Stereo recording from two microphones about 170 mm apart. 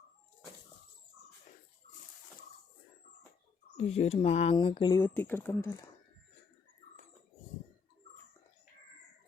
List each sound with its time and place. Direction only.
3.8 s speech: 40° left (ahead or behind)
4.9 s speech: 15° left (ahead or behind)